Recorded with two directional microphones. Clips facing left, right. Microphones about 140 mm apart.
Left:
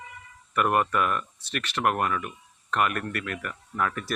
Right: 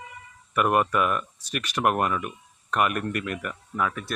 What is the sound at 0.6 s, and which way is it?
Speech, 10° right (ahead or behind).